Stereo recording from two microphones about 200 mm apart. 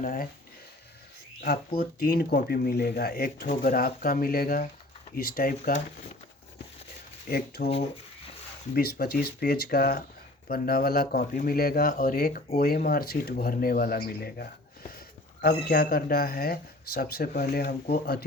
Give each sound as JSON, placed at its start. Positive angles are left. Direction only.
{"t": 0.0, "sound": "speech", "side_deg": 45}
{"t": 2.0, "sound": "speech", "side_deg": 50}
{"t": 7.3, "sound": "speech", "side_deg": 50}
{"t": 8.7, "sound": "speech", "side_deg": 50}